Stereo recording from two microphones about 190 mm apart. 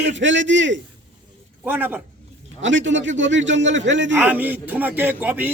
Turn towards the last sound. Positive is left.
turn(degrees=-10)  # may be behind; listen again after turning